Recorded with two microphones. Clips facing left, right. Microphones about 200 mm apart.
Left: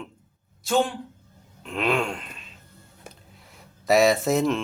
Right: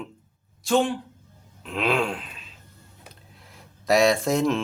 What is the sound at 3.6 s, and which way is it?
Speech, centre (ahead or behind).